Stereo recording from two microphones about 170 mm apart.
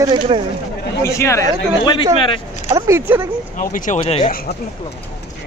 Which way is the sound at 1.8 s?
30° left (ahead or behind).